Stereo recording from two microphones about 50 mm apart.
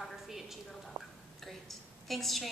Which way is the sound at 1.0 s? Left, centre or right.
Right.